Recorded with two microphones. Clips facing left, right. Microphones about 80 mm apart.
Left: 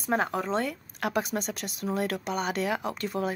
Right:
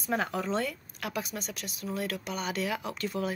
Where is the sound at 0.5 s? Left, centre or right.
Left.